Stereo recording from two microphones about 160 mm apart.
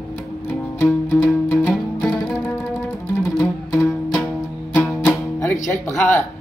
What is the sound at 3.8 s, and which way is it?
Music, 5° left (ahead or behind).